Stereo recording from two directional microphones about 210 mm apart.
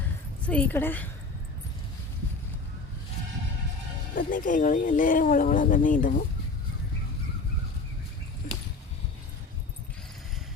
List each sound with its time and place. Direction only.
0.4 s a woman's voice: 5° left (ahead or behind)
4.1 s speech: 40° left (ahead or behind)